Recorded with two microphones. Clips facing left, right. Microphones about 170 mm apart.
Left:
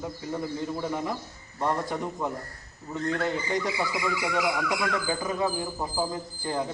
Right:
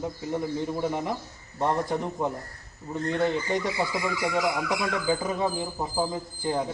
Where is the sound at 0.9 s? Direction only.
20° right (ahead or behind).